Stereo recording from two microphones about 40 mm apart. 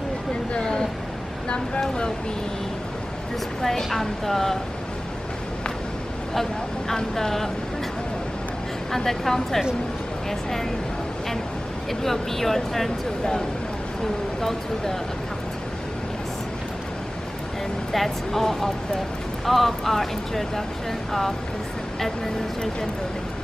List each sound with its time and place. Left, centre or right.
0.5 s a sound: left
1.8 s speech: centre
3.6 s speech: centre
6.9 s speech: centre
8.9 s speech: centre
11.9 s speech: centre
17.9 s speech: centre